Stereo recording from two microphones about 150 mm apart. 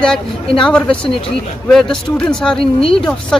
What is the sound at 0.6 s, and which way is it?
Speech, 5° left (ahead or behind).